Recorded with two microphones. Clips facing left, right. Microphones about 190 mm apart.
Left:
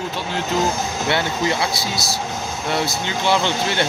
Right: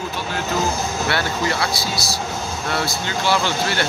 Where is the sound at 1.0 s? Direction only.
20° left (ahead or behind).